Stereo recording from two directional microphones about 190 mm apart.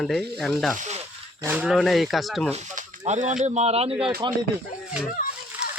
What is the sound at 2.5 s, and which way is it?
Speech, 40° right (ahead or behind).